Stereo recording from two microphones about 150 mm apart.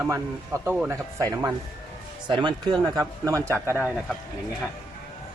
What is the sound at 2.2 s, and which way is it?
Speech, 30° right (ahead or behind).